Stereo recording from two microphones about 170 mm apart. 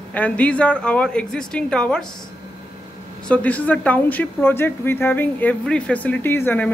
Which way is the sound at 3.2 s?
10° left (ahead or behind).